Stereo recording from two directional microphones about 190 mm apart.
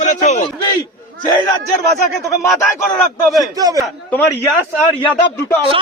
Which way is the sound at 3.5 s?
20° right (ahead or behind).